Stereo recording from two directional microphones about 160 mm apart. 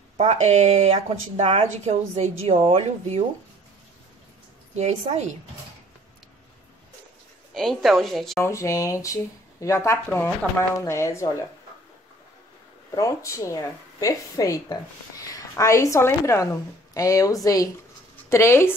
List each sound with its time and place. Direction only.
0.2 s speech: 45° right (ahead or behind)
4.7 s speech: 40° right (ahead or behind)
7.5 s a woman's voice: centre (ahead or behind)
8.4 s a woman's voice: 20° left (ahead or behind)
12.9 s a woman's voice: 20° left (ahead or behind)